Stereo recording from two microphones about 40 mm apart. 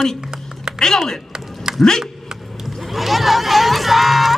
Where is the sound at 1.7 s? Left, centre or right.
Centre.